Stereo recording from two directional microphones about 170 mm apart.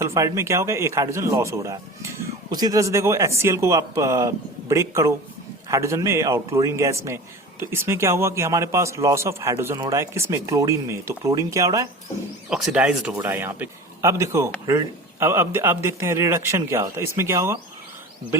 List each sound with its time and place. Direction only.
0.0 s speech: 15° right (ahead or behind)
12.5 s speech: centre (ahead or behind)